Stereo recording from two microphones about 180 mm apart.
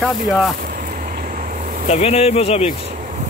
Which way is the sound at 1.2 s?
50° right (ahead or behind).